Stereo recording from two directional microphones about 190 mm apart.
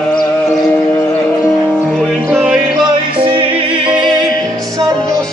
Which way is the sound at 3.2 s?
25° right (ahead or behind).